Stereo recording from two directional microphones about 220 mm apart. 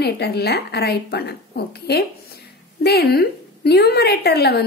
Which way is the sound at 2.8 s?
45° left (ahead or behind).